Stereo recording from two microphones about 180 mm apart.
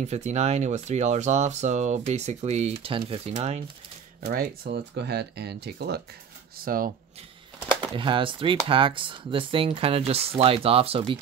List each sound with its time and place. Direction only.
0.0 s speech: 40° right (ahead or behind)
4.2 s speech: 55° right (ahead or behind)
6.6 s speech: 50° right (ahead or behind)
7.8 s speech: 25° right (ahead or behind)